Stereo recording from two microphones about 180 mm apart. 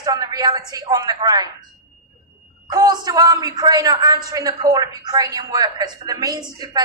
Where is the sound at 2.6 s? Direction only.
20° right (ahead or behind).